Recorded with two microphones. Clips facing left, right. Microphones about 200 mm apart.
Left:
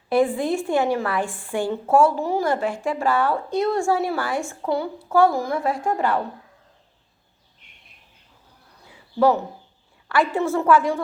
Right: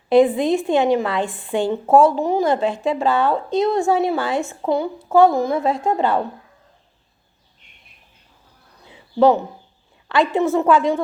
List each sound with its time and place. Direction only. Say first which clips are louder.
0.1 s a woman's voice: right 6 dB; 20° right (ahead or behind)
8.8 s a sound: right 4 dB; 20° right (ahead or behind)
10.1 s a woman's voice: right 4 dB; 20° right (ahead or behind)